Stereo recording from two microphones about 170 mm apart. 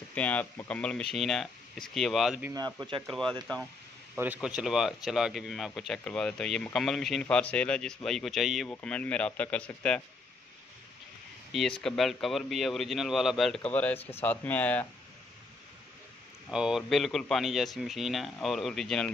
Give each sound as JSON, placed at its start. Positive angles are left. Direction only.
{"t": 0.1, "sound": "speech", "side_deg": 10}
{"t": 2.5, "sound": "a man's voice", "side_deg": -25}
{"t": 3.1, "sound": "speech", "side_deg": 5}
{"t": 4.2, "sound": "speech", "side_deg": -5}
{"t": 11.8, "sound": "speech", "side_deg": 0}
{"t": 16.4, "sound": "speech", "side_deg": -5}